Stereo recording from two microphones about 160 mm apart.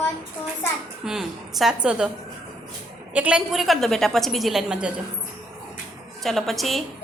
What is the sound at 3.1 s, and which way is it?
A woman's voice, 5° right (ahead or behind).